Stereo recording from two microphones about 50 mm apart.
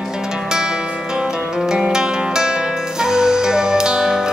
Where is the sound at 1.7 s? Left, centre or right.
Centre.